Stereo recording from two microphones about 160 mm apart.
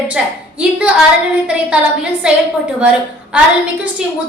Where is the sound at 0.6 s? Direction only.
5° right (ahead or behind).